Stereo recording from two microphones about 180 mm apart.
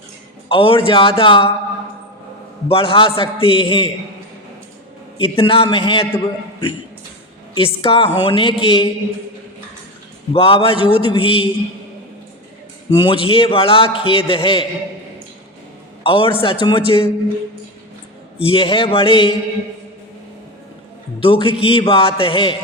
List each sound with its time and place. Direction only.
0.4 s a man's voice: 30° left (ahead or behind)
2.6 s a man's voice: 30° left (ahead or behind)
5.4 s a man's voice: 30° left (ahead or behind)
10.3 s a woman's voice: 30° left (ahead or behind)
12.9 s a man's voice: 30° left (ahead or behind)
16.0 s a man's voice: 30° left (ahead or behind)
18.3 s a man's voice: 30° left (ahead or behind)
21.2 s a man's voice: 30° left (ahead or behind)